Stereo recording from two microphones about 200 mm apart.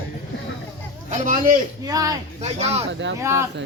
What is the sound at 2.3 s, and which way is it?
Music, 35° right (ahead or behind).